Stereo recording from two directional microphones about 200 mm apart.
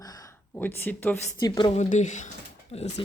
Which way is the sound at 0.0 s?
20° left (ahead or behind).